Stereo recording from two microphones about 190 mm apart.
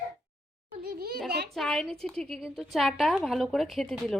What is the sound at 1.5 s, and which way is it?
A woman's voice, centre (ahead or behind).